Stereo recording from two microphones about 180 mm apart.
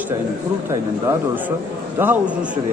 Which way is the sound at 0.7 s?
15° right (ahead or behind).